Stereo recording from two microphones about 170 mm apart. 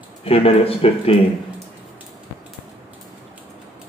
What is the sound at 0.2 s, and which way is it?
Speech, 35° left (ahead or behind).